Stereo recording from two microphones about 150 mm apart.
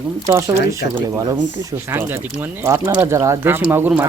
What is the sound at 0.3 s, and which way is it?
Speech, 20° right (ahead or behind).